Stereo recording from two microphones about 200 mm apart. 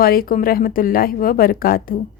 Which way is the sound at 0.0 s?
45° left (ahead or behind).